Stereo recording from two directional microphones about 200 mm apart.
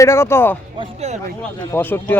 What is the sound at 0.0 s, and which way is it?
Speech, 15° left (ahead or behind).